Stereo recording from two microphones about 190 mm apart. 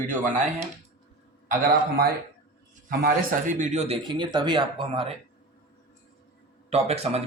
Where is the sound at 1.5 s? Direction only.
50° right (ahead or behind).